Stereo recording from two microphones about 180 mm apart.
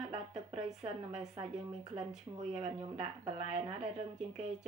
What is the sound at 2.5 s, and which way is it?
Speech, 40° right (ahead or behind).